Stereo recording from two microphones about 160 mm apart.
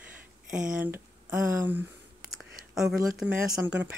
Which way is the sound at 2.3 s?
5° right (ahead or behind).